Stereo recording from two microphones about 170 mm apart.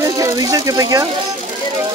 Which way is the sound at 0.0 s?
20° right (ahead or behind).